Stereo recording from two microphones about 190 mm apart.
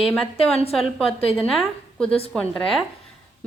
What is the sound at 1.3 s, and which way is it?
A woman's voice, centre (ahead or behind).